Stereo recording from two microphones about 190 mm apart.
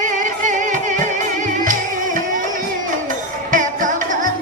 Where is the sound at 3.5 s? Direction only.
45° right (ahead or behind).